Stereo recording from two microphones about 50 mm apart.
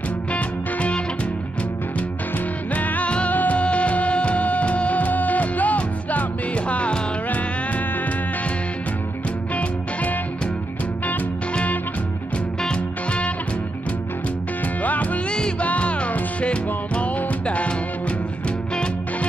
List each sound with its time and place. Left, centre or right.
0.3 s music: left
2.7 s music: left
3.1 s music: left
11.1 s music: left
14.8 s music: left